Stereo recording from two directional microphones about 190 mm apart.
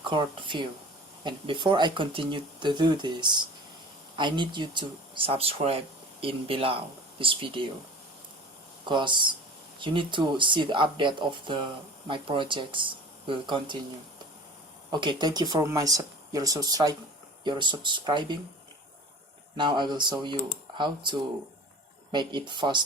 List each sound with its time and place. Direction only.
0.0 s speech: 25° right (ahead or behind)
8.9 s speech: 25° right (ahead or behind)
14.9 s speech: 25° right (ahead or behind)
19.5 s speech: 25° right (ahead or behind)